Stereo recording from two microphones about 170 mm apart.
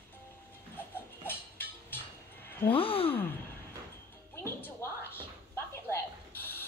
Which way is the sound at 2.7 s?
35° left (ahead or behind).